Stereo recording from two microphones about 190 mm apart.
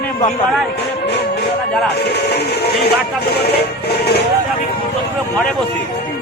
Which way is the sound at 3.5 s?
60° left (ahead or behind).